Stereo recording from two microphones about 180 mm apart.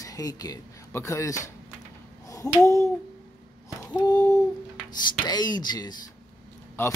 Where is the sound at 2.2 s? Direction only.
20° left (ahead or behind).